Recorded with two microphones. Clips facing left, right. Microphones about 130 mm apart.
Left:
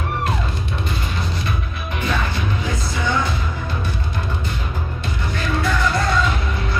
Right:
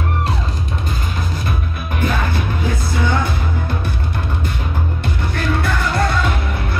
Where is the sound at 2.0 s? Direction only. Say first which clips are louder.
Right 3 dB; 50° right (ahead or behind).